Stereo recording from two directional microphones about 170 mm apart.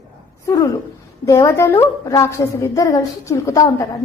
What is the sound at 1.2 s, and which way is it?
A woman's voice, 15° left (ahead or behind).